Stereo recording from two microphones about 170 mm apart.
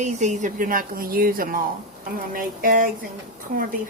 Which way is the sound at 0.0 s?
45° right (ahead or behind).